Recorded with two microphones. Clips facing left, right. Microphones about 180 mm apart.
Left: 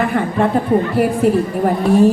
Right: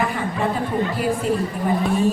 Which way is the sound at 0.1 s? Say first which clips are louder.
Left 8 dB; 60° left (ahead or behind).